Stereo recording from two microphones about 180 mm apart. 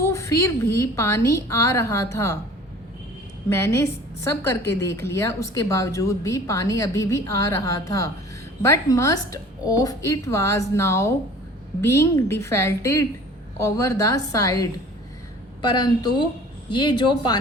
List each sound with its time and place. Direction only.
0.0 s speech: 15° left (ahead or behind)
3.5 s a woman's voice: 15° left (ahead or behind)